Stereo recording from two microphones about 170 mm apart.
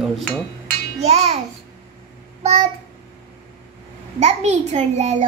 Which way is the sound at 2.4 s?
40° right (ahead or behind).